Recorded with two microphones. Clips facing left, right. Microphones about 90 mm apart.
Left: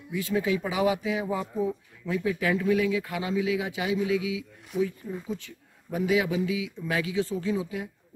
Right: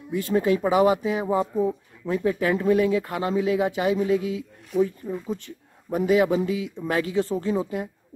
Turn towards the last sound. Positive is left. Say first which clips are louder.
# right 4 dB
turn(degrees=-45)  # may be behind; listen again after turning